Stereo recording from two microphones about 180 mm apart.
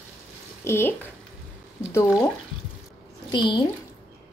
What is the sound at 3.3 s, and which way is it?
Speech, 25° left (ahead or behind).